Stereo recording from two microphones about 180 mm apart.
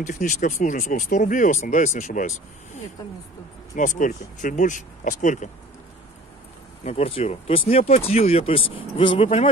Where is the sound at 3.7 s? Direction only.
45° left (ahead or behind).